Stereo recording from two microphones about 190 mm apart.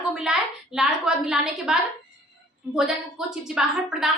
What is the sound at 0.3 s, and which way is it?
A woman's voice, 5° right (ahead or behind).